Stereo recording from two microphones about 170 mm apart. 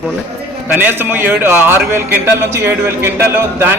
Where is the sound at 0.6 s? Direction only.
10° right (ahead or behind).